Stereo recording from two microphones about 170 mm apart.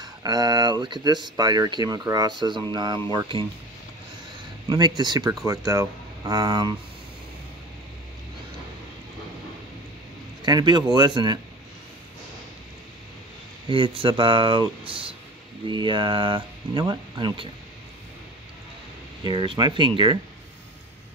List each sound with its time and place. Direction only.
0.0 s speech: 20° right (ahead or behind)
4.6 s speech: 25° right (ahead or behind)
10.4 s speech: 25° right (ahead or behind)
13.7 s speech: 30° right (ahead or behind)
19.2 s speech: 25° right (ahead or behind)